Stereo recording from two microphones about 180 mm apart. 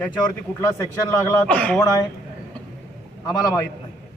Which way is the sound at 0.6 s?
15° left (ahead or behind).